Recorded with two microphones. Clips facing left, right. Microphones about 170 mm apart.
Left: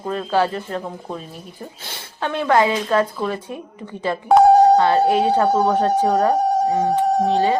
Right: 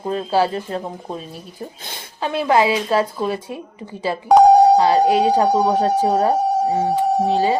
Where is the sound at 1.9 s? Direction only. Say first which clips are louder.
Right 1 dB; 10° right (ahead or behind).